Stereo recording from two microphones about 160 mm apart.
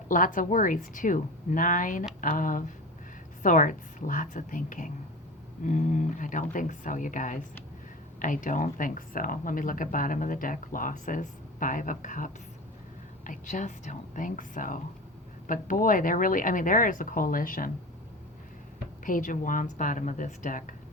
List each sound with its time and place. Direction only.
0.1 s speech: 55° left (ahead or behind)
19.0 s speech: 55° left (ahead or behind)